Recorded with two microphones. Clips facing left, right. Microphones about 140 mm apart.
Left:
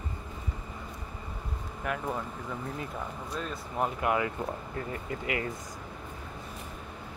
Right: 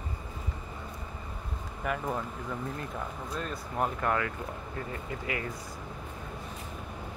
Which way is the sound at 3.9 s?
15° left (ahead or behind).